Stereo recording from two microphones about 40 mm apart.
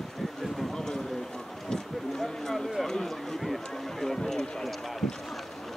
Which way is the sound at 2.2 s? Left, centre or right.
Centre.